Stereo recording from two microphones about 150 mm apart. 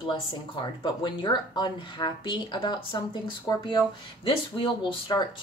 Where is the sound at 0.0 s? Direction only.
35° left (ahead or behind).